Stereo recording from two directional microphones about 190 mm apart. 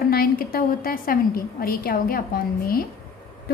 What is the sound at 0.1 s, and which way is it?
A woman's voice, 50° left (ahead or behind).